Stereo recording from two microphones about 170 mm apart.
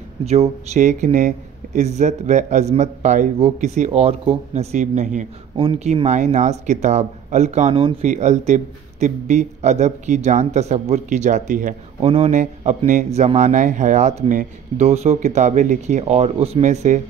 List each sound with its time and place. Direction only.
0.2 s speech: 40° right (ahead or behind)
5.6 s speech: 30° right (ahead or behind); by 11.7 s 50° right (ahead or behind)
12.0 s speech: 35° right (ahead or behind)